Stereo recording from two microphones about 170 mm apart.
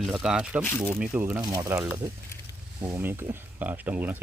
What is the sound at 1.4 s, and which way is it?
Speech, 20° right (ahead or behind).